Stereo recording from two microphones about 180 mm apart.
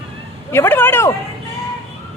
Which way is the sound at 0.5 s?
10° left (ahead or behind).